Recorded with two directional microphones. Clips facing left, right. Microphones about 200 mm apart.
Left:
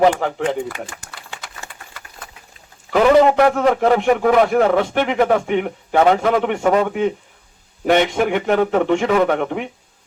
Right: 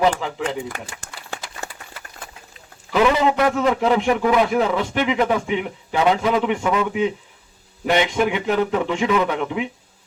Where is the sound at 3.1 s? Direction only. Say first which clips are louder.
Left 6 dB; 55° left (ahead or behind).